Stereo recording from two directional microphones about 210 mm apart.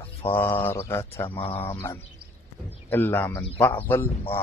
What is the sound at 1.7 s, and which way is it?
A man's voice, 10° left (ahead or behind).